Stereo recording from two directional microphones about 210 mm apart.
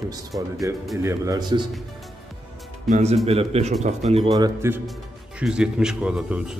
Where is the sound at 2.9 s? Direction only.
30° right (ahead or behind).